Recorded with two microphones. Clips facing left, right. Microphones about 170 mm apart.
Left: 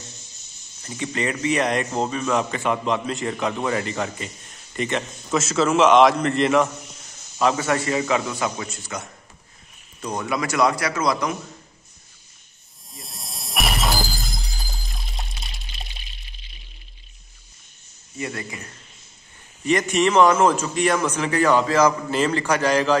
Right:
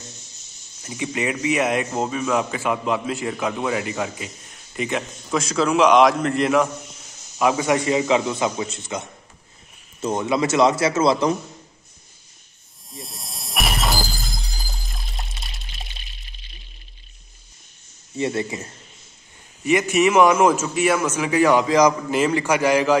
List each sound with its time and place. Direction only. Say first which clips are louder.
0.8 s a man's voice: right 1 dB; 10° right (ahead or behind)
7.3 s a man's voice: right 2 dB; 10° right (ahead or behind)
12.9 s shatter: right 3 dB; centre (ahead or behind)
18.1 s a man's voice: right 7 dB; 25° right (ahead or behind)
19.6 s a man's voice: right 2 dB; 10° right (ahead or behind)